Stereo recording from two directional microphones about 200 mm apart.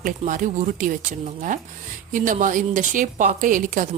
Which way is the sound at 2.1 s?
40° right (ahead or behind).